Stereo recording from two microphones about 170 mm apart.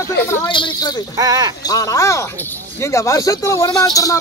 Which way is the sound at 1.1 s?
20° right (ahead or behind).